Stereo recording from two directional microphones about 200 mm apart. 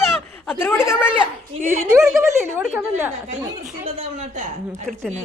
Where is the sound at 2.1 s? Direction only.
15° right (ahead or behind).